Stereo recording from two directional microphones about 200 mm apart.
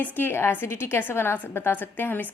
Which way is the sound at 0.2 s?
10° left (ahead or behind).